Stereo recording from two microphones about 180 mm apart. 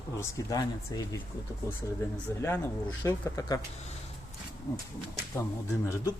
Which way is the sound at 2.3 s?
15° left (ahead or behind).